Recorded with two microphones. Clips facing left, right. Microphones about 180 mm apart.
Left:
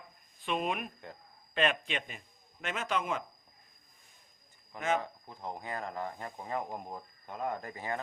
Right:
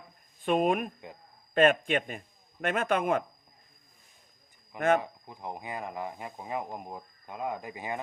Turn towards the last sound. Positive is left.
turn(degrees=-15)  # may be behind; listen again after turning